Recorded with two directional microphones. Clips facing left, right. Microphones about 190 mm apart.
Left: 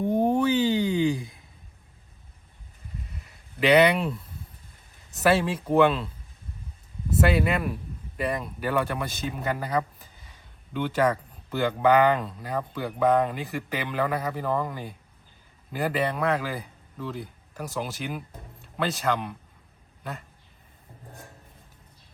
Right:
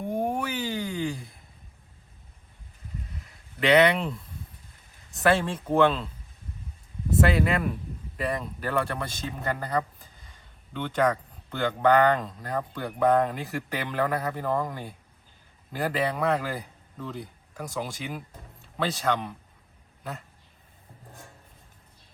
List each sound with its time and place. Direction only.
0.2 s a sound: 25° left (ahead or behind)
3.6 s speech: 5° left (ahead or behind)
5.1 s speech: 5° left (ahead or behind)
7.2 s a man's voice: 5° left (ahead or behind)